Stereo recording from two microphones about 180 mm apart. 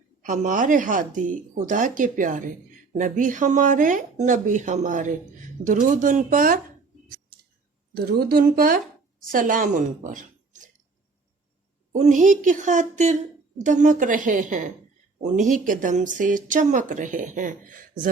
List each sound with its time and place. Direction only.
0.2 s speech: 45° right (ahead or behind)
7.9 s a woman's voice: 60° right (ahead or behind); by 10.6 s 45° right (ahead or behind)
11.9 s speech: 40° right (ahead or behind)